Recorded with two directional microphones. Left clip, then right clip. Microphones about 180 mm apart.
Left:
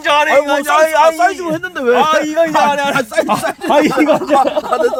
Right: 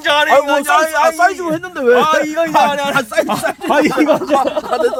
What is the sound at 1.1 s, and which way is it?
Speech, 15° right (ahead or behind).